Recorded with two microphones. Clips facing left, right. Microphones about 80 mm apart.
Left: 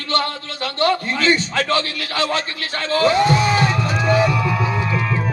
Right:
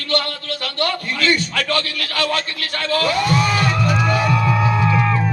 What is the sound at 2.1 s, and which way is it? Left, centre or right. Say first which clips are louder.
Speech: even; left.